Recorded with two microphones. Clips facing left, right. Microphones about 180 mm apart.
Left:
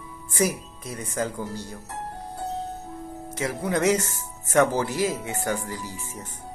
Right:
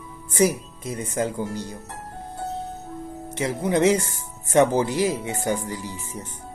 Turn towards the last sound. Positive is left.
turn(degrees=-15)  # may be behind; listen again after turning